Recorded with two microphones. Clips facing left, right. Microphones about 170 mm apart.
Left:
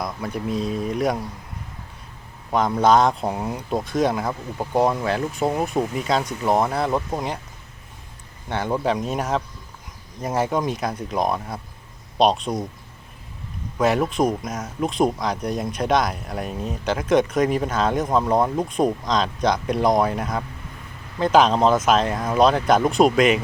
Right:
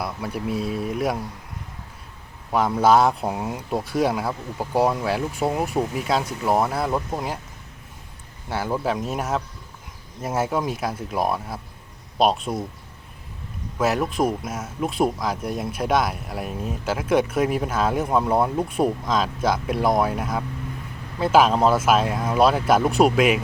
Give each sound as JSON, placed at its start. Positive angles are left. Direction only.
{"t": 0.0, "sound": "speech", "side_deg": -10}
{"t": 2.5, "sound": "speech", "side_deg": -5}
{"t": 8.4, "sound": "speech", "side_deg": -5}
{"t": 13.7, "sound": "speech", "side_deg": 0}